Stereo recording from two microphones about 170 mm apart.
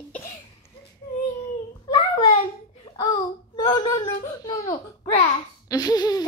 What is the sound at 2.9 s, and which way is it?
Wail, 30° left (ahead or behind).